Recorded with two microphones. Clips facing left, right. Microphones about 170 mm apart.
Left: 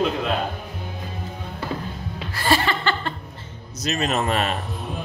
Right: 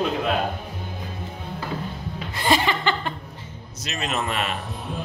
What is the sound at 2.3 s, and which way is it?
Laughter, 15° right (ahead or behind).